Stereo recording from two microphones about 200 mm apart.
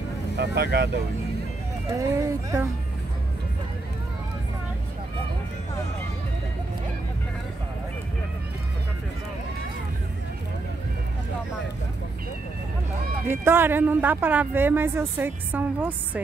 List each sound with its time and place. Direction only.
0.4 s speech: 55° right (ahead or behind)
2.0 s speech: 15° right (ahead or behind)
13.3 s speech: 10° right (ahead or behind)